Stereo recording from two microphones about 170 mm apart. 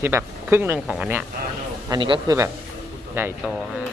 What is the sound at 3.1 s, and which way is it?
Speech, 10° right (ahead or behind).